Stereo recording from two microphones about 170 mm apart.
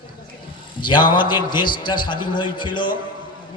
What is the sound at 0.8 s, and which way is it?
A man's voice, 25° left (ahead or behind).